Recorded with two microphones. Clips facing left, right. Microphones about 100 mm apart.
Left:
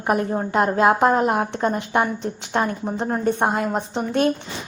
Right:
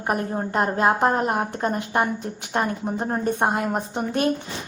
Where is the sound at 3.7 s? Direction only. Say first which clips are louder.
Left 2 dB; 10° right (ahead or behind).